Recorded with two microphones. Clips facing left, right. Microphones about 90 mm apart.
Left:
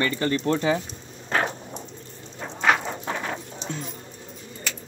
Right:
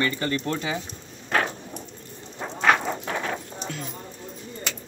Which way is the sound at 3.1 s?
25° left (ahead or behind).